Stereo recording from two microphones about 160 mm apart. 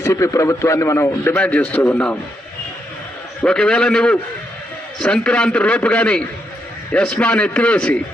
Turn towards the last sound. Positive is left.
turn(degrees=10)  # may be behind; listen again after turning